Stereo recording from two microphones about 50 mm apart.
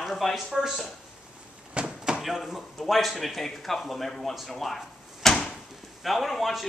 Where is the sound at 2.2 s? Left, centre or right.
Centre.